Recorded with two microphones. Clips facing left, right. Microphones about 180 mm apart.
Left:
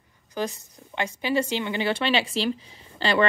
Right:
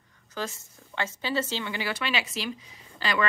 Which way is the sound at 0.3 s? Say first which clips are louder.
Left 5 dB; 15° left (ahead or behind).